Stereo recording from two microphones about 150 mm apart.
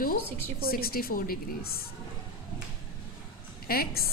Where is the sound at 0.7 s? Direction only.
85° left.